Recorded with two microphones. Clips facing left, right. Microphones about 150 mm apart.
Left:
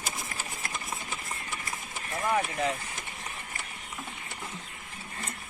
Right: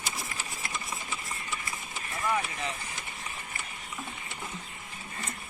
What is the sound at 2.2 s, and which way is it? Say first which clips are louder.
Speech: left 3 dB; 50° left (ahead or behind).